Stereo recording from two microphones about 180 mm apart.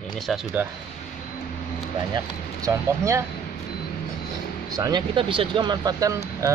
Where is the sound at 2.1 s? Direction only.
20° right (ahead or behind).